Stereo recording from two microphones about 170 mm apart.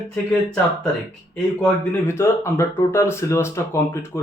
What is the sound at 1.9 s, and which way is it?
Speech, 15° left (ahead or behind).